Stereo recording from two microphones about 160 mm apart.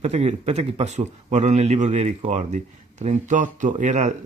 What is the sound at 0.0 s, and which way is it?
A man's voice, 45° right (ahead or behind).